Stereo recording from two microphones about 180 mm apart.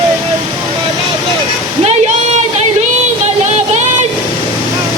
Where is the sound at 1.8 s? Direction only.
35° right (ahead or behind).